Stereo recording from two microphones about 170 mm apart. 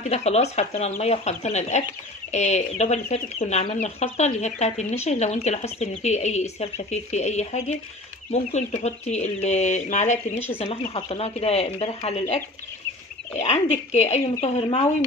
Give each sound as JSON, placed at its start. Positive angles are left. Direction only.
{"t": 0.0, "sound": "speech", "side_deg": 40}